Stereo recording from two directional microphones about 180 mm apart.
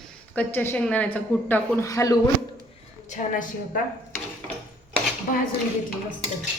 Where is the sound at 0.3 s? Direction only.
10° left (ahead or behind).